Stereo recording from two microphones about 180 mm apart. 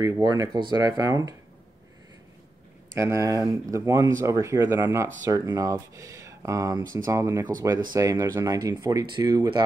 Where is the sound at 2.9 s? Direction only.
15° right (ahead or behind).